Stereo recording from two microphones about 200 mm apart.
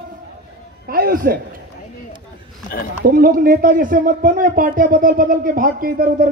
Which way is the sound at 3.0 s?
45° right (ahead or behind).